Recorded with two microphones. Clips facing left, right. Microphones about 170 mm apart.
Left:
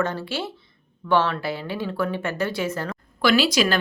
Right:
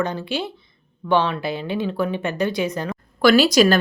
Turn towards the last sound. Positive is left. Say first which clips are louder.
# right 5 dB
turn(degrees=-40)  # may be behind; listen again after turning